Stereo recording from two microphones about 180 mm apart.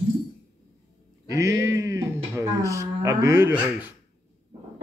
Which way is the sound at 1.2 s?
15° right (ahead or behind).